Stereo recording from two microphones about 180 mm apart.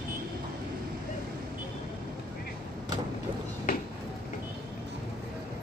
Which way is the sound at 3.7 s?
50° left (ahead or behind).